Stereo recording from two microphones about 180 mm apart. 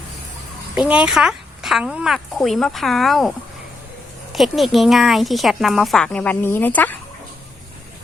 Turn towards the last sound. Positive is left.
turn(degrees=10)  # may be behind; listen again after turning